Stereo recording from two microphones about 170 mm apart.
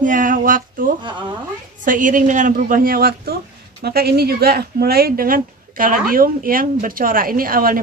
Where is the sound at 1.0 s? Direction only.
25° right (ahead or behind).